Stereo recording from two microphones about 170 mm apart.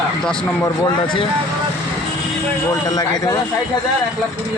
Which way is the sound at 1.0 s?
25° left (ahead or behind).